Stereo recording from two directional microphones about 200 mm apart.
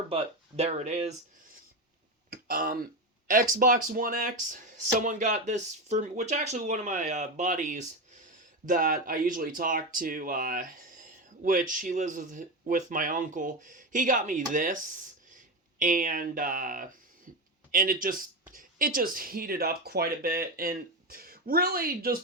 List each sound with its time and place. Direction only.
0.1 s speech: 30° right (ahead or behind)
2.3 s speech: 45° right (ahead or behind)